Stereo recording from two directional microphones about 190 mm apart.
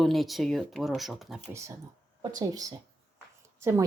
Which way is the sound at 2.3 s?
20° right (ahead or behind).